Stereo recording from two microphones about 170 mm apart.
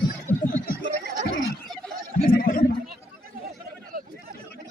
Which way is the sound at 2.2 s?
60° left (ahead or behind).